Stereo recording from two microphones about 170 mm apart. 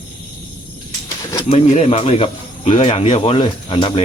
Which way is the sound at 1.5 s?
35° left (ahead or behind).